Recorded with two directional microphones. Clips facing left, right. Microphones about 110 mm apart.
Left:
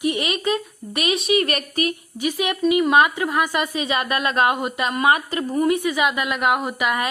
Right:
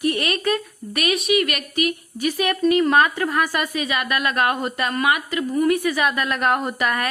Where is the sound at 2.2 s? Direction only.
15° left (ahead or behind).